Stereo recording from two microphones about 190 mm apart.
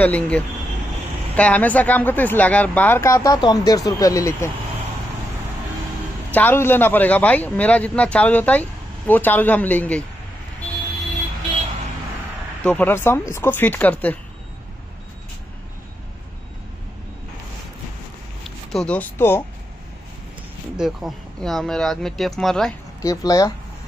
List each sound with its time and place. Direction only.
0.0 s a man's voice: 5° left (ahead or behind)
6.3 s a man's voice: 10° left (ahead or behind)
12.6 s a man's voice: 10° left (ahead or behind)
18.4 s speech: centre (ahead or behind)
20.7 s speech: centre (ahead or behind)
23.0 s speech: 20° left (ahead or behind)